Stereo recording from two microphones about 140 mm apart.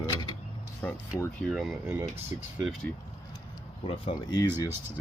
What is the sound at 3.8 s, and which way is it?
Speech, 40° left (ahead or behind).